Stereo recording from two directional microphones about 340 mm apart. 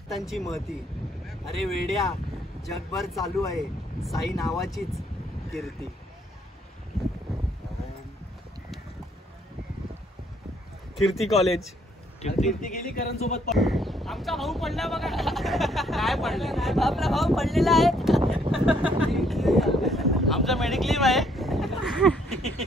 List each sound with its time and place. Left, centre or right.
0.2 s speech: centre
11.0 s speech: centre
12.2 s a man's voice: centre
13.5 s speech: centre
18.2 s a sound: centre
18.5 s speech: centre